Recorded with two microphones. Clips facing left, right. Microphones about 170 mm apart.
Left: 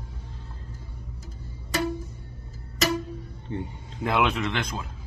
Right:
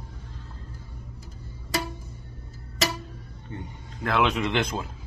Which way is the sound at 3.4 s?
20° left (ahead or behind).